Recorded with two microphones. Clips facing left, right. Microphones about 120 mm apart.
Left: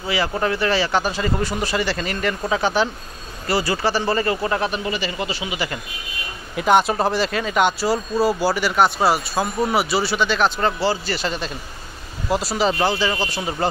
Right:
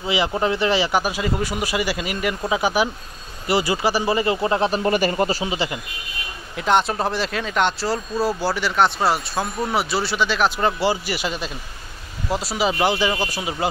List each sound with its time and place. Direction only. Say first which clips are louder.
0.0 s speech: right 1 dB; 20° right (ahead or behind)
4.8 s speech: right 6 dB; 45° right (ahead or behind)
6.5 s speech: left 3 dB; 5° left (ahead or behind)
12.8 s speech: right 1 dB; 15° right (ahead or behind)